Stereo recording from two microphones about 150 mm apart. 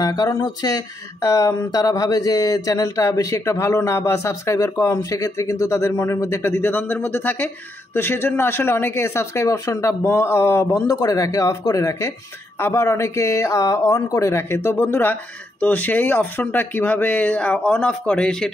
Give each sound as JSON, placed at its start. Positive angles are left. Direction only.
{"t": 0.0, "sound": "speech", "side_deg": 25}